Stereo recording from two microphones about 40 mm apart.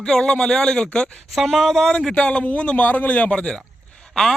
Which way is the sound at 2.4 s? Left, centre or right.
Left.